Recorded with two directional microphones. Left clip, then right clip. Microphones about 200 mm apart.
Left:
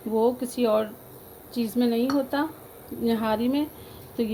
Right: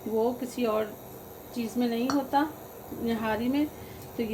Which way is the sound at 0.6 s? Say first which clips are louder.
Left 5 dB; 45° left (ahead or behind).